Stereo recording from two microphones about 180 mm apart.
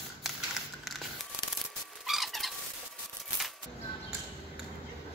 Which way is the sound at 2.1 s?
Centre (ahead or behind).